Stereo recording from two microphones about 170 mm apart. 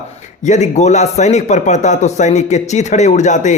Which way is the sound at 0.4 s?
45° left (ahead or behind).